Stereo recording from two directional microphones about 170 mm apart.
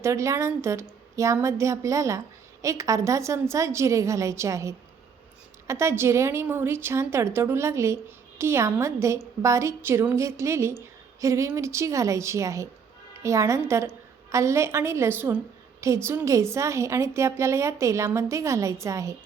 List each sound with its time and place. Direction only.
0.0 s a woman's voice: 15° right (ahead or behind)